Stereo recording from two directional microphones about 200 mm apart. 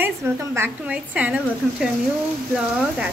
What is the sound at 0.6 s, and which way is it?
Speech, 5° right (ahead or behind).